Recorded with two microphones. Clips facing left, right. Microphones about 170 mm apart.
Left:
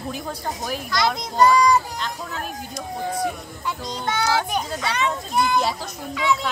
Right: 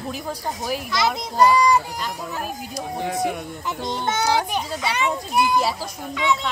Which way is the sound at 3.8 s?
25° right (ahead or behind).